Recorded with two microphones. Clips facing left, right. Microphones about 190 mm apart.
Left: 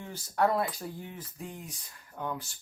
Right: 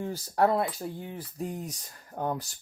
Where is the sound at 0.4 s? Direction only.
25° right (ahead or behind).